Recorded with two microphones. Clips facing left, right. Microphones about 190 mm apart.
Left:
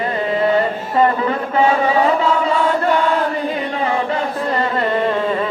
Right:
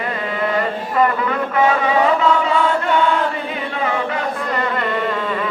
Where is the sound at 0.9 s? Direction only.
30° left (ahead or behind).